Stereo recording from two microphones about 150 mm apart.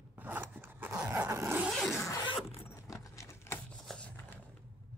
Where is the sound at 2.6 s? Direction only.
20° left (ahead or behind).